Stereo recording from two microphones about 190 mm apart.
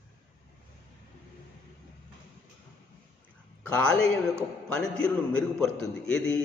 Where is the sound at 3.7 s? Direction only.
5° left (ahead or behind).